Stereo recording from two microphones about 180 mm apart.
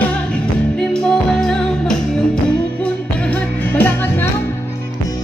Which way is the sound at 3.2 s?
10° left (ahead or behind).